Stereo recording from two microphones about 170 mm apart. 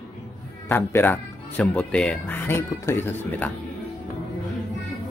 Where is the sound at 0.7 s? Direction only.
10° left (ahead or behind).